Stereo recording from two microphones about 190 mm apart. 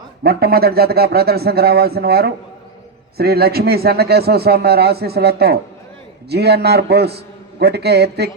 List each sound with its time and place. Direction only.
0.2 s a man's voice: 55° right (ahead or behind)